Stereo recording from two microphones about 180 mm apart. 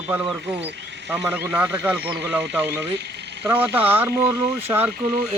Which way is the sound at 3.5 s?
10° right (ahead or behind).